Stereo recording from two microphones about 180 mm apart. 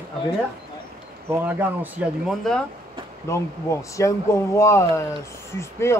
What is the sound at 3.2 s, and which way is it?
Speech, 15° left (ahead or behind).